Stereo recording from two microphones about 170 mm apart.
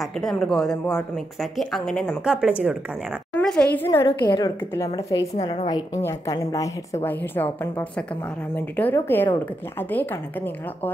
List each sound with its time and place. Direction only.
0.0 s speech: centre (ahead or behind)
3.3 s a woman's voice: 5° left (ahead or behind)